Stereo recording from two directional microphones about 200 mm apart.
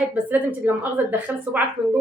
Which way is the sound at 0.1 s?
10° right (ahead or behind).